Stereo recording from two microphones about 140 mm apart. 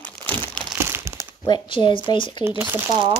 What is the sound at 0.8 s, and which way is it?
Crumpling, 20° right (ahead or behind).